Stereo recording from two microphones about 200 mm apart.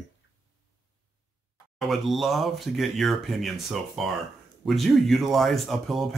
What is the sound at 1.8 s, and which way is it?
Speech, centre (ahead or behind).